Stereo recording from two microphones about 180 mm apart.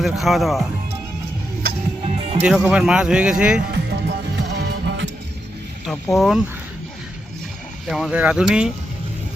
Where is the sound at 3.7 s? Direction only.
70° right (ahead or behind).